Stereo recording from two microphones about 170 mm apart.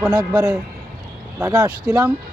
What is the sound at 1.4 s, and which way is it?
Speech, 20° right (ahead or behind).